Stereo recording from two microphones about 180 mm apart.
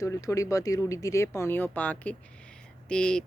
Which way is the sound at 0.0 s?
15° left (ahead or behind).